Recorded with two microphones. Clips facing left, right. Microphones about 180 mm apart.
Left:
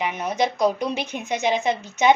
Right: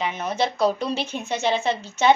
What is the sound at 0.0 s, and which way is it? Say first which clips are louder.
A woman's voice: left 1 dB; 15° left (ahead or behind).